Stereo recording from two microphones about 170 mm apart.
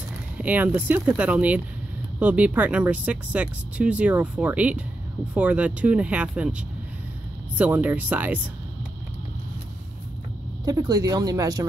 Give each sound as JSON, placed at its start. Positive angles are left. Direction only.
{"t": 0.4, "sound": "speech", "side_deg": -10}
{"t": 7.5, "sound": "speech", "side_deg": -10}
{"t": 10.6, "sound": "speech", "side_deg": -20}